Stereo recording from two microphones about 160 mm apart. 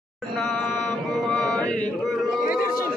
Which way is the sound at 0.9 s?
5° left (ahead or behind).